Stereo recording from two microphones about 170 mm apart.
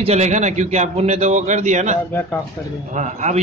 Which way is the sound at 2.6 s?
15° left (ahead or behind).